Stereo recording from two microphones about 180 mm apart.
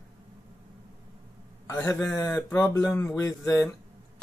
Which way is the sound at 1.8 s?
10° left (ahead or behind).